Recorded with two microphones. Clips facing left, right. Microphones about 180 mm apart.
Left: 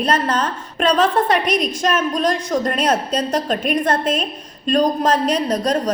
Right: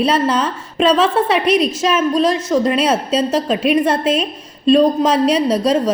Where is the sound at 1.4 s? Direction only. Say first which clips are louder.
Right 5 dB; 30° right (ahead or behind).